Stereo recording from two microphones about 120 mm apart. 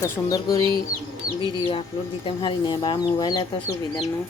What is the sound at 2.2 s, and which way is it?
Speech, 45° left (ahead or behind).